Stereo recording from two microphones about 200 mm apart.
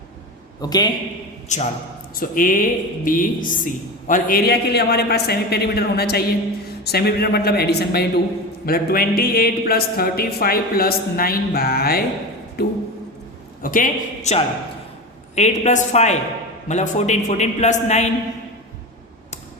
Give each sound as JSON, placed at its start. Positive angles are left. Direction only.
{"t": 0.6, "sound": "a man's voice", "side_deg": 20}
{"t": 1.5, "sound": "a man's voice", "side_deg": 35}